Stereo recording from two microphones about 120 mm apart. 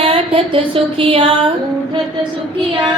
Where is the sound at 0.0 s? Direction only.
50° right (ahead or behind).